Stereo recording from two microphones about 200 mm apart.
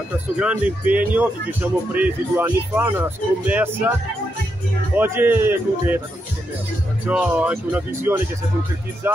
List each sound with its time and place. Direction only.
0.4 s speech: 5° right (ahead or behind)
4.9 s speech: 10° right (ahead or behind)
7.1 s speech: 5° right (ahead or behind)